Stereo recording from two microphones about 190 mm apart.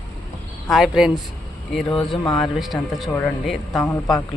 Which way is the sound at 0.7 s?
Centre (ahead or behind).